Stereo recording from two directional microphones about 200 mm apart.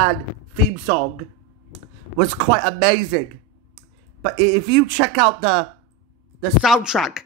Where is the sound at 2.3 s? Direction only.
5° right (ahead or behind).